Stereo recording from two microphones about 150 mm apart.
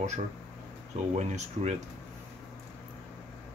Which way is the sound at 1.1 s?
45° right (ahead or behind).